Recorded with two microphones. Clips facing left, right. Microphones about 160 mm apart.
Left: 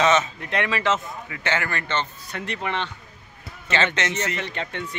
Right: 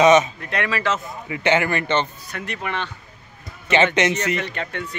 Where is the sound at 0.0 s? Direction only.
15° right (ahead or behind).